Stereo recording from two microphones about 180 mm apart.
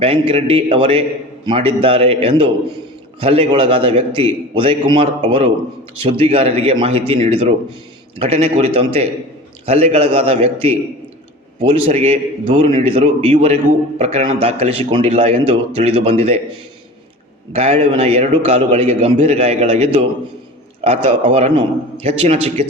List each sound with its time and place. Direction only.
0.0 s a man's voice: 30° right (ahead or behind)
17.5 s a man's voice: 30° right (ahead or behind)